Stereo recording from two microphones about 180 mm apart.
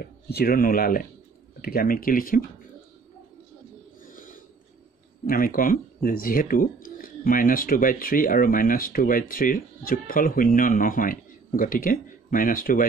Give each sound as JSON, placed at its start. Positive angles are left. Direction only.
{"t": 0.0, "sound": "speech", "side_deg": 60}
{"t": 4.0, "sound": "a sound", "side_deg": 50}
{"t": 5.2, "sound": "speech", "side_deg": 50}